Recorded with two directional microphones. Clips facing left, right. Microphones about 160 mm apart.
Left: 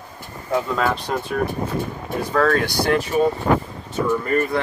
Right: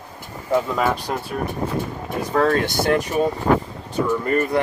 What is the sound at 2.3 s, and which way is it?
Speech, 20° right (ahead or behind).